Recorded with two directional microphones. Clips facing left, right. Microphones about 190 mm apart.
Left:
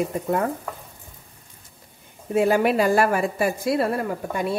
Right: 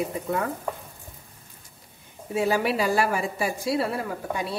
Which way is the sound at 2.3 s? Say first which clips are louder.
Left 5 dB; 50° left (ahead or behind).